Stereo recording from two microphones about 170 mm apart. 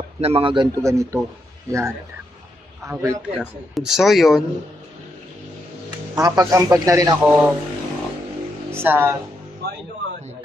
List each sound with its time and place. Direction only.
0.2 s a man's voice: 35° right (ahead or behind)
0.8 s speech: 15° right (ahead or behind)
3.2 s speech: 5° right (ahead or behind)
6.1 s a man's voice: 20° right (ahead or behind)
8.7 s speech: 10° right (ahead or behind)